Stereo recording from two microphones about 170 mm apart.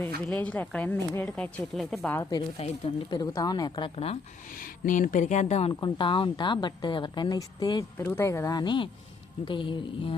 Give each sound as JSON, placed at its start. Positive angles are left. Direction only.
{"t": 0.3, "sound": "speech", "side_deg": 5}
{"t": 2.3, "sound": "a woman's voice", "side_deg": 30}
{"t": 4.5, "sound": "speech", "side_deg": 50}
{"t": 5.8, "sound": "a woman's voice", "side_deg": 30}